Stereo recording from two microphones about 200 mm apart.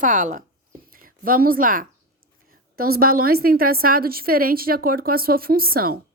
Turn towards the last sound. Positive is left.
turn(degrees=-45)  # may be behind; listen again after turning